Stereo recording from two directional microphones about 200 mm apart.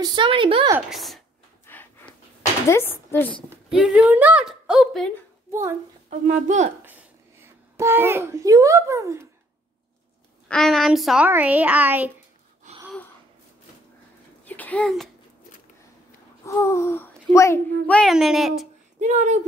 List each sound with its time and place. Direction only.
0.0 s a woman's voice: 25° right (ahead or behind)
0.7 s a woman's voice: centre (ahead or behind)
1.7 s a sound: 10° left (ahead or behind)
2.7 s speech: 10° left (ahead or behind)
3.7 s a woman's voice: centre (ahead or behind)
5.5 s a child's voice: 15° right (ahead or behind)
6.0 s a woman's voice: 40° right (ahead or behind)
6.8 s a child's voice: 10° right (ahead or behind)
10.5 s a woman's voice: centre (ahead or behind)
12.7 s gasp: 35° right (ahead or behind)
14.4 s a sound: 10° left (ahead or behind)
16.4 s a child's voice: 15° left (ahead or behind)
17.8 s a woman's voice: 5° left (ahead or behind)
18.9 s a woman's voice: 35° right (ahead or behind)